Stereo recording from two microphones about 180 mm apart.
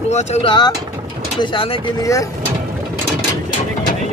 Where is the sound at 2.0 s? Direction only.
20° left (ahead or behind).